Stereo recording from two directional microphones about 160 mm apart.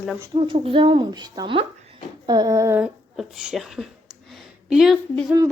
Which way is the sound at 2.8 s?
5° right (ahead or behind).